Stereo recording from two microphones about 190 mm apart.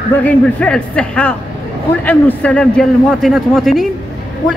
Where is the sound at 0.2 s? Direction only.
5° left (ahead or behind).